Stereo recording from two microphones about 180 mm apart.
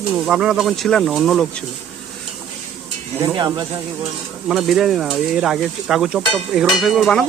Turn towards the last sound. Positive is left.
turn(degrees=0)  # may be behind; listen again after turning